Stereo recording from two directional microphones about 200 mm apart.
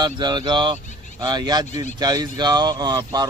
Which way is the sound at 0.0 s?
20° right (ahead or behind).